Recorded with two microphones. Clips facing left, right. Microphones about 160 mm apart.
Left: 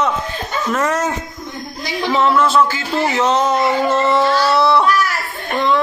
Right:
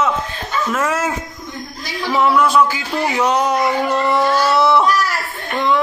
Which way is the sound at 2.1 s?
10° right (ahead or behind).